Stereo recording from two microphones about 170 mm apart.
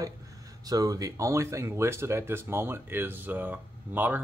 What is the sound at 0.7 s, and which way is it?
Speech, 20° right (ahead or behind).